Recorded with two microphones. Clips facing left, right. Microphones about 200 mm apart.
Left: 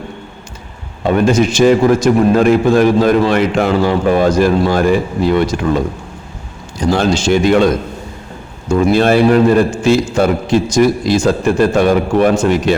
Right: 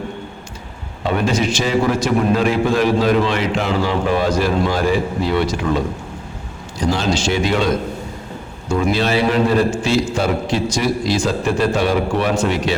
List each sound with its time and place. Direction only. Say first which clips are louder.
1.0 s a man's voice: left 6 dB; 50° left (ahead or behind)
6.9 s a man's voice: left 7 dB; 50° left (ahead or behind)
8.9 s a man's voice: left 8 dB; 50° left (ahead or behind)